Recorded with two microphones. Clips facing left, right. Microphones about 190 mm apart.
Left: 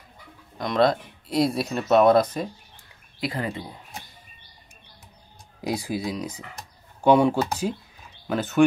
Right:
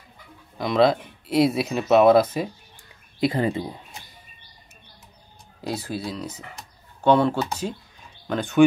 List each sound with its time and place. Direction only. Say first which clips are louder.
0.6 s speech: right 2 dB; 5° right (ahead or behind)
3.2 s speech: right 7 dB; 25° right (ahead or behind)
5.6 s speech: left 2 dB; 10° left (ahead or behind)